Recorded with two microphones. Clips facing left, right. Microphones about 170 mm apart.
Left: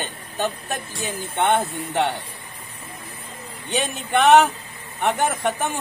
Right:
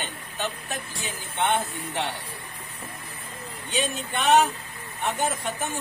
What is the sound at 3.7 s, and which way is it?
Speech, 65° left (ahead or behind).